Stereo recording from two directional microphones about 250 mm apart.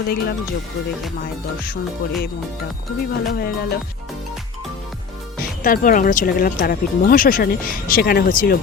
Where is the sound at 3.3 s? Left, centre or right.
Left.